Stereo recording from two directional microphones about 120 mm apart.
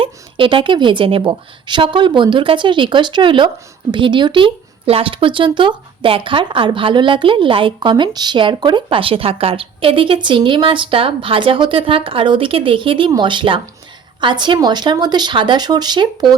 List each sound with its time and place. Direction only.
0.0 s speech: 45° right (ahead or behind)